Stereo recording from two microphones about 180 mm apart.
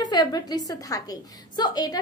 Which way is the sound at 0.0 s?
25° left (ahead or behind).